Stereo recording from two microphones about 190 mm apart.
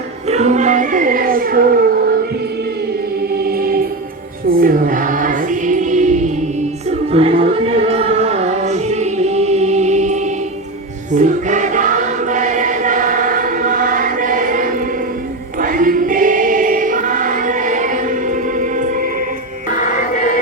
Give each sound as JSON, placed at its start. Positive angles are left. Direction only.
{"t": 0.3, "sound": "speech", "side_deg": -35}
{"t": 3.4, "sound": "choir", "side_deg": -50}
{"t": 7.1, "sound": "music", "side_deg": -30}
{"t": 11.1, "sound": "choir", "side_deg": -40}